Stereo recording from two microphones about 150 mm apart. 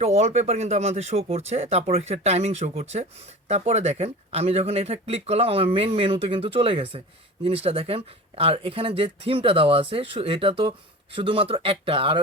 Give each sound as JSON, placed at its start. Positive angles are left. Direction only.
{"t": 0.0, "sound": "speech", "side_deg": -45}